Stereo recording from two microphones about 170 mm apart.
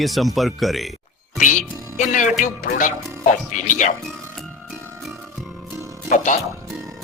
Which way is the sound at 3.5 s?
50° left (ahead or behind).